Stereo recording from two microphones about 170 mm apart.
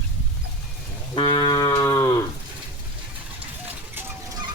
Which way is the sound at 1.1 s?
25° left (ahead or behind).